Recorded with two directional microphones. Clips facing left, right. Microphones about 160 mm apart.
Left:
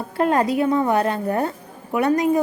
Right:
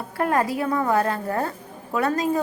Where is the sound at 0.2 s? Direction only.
20° left (ahead or behind).